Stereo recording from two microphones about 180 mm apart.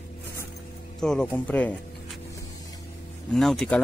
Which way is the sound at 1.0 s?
5° left (ahead or behind).